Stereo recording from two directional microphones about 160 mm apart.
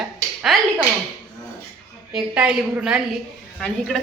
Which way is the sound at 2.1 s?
5° right (ahead or behind).